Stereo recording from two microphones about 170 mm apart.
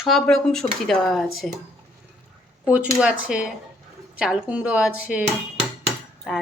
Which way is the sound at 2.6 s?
10° right (ahead or behind).